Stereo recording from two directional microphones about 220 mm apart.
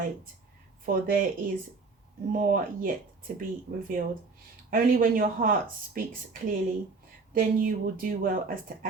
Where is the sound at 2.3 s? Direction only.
40° right (ahead or behind).